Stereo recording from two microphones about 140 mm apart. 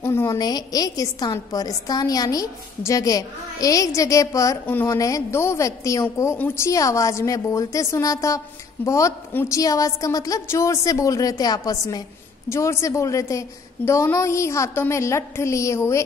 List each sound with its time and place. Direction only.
0.0 s a woman's voice: 20° left (ahead or behind)
0.4 s a woman's voice: 30° left (ahead or behind)